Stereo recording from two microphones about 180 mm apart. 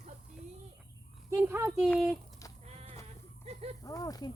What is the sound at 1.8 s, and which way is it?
Speech, 5° left (ahead or behind).